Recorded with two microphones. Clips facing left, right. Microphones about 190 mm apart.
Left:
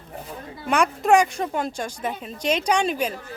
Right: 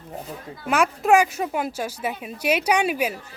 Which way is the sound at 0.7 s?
5° right (ahead or behind).